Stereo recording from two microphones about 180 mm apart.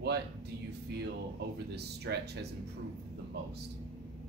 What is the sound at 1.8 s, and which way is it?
Speech, 65° right (ahead or behind).